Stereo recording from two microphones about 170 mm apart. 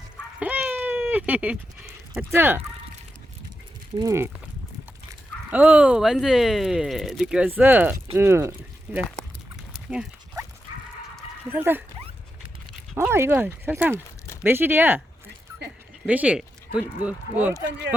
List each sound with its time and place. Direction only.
0.3 s a sound: 10° right (ahead or behind)
3.9 s speech: 20° right (ahead or behind)
5.5 s speech: 10° right (ahead or behind)
9.7 s dog: 5° right (ahead or behind)
11.5 s speech: 10° right (ahead or behind)
13.0 s speech: 15° right (ahead or behind)
16.0 s speech: 10° right (ahead or behind)